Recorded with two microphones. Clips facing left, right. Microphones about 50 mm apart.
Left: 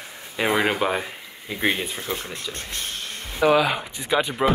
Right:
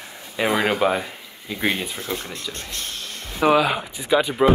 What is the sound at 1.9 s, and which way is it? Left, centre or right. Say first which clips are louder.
Speech: right 1 dB; centre.